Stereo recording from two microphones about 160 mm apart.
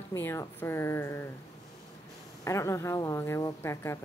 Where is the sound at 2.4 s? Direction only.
20° left (ahead or behind).